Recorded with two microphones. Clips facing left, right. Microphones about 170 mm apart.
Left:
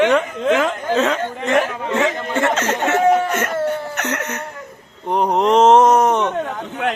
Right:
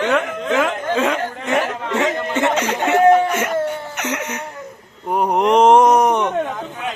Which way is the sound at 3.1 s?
10° right (ahead or behind).